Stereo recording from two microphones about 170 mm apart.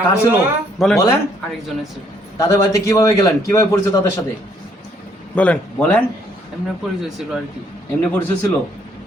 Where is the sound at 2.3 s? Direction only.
20° left (ahead or behind).